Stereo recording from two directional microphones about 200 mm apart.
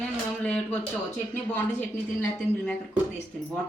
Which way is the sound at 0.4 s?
5° left (ahead or behind).